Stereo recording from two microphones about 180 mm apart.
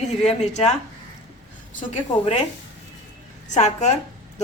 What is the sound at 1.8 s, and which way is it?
Speech, 35° left (ahead or behind).